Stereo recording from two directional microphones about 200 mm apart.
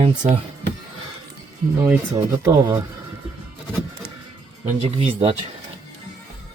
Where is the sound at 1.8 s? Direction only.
10° right (ahead or behind).